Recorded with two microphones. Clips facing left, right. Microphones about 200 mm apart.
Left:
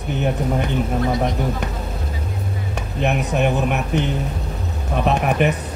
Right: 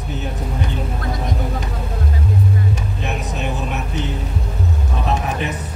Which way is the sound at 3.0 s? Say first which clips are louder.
Left 7 dB; 60° left (ahead or behind).